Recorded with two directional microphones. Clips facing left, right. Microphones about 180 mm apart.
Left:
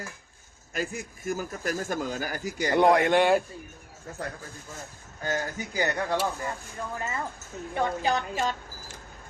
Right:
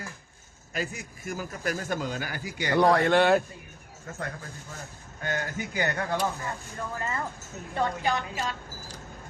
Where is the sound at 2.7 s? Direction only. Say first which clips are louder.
Left 1 dB; 20° left (ahead or behind).